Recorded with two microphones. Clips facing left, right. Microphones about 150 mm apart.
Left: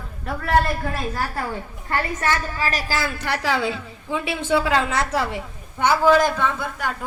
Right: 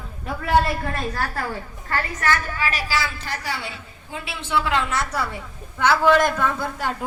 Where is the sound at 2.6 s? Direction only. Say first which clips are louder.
Left 1 dB; 40° left (ahead or behind); by 3.6 s 85° left.